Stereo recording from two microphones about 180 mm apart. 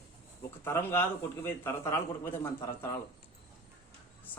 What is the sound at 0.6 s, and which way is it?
A man's voice, 10° left (ahead or behind).